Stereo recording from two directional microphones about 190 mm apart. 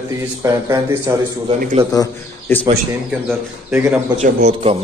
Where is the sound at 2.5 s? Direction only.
10° left (ahead or behind).